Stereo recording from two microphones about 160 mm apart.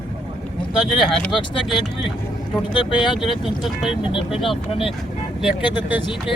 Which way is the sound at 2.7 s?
30° left (ahead or behind).